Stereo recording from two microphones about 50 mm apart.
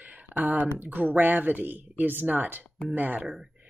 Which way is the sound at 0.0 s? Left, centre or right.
Right.